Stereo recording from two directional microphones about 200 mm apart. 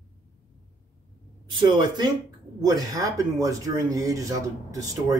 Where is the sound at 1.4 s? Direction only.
25° right (ahead or behind).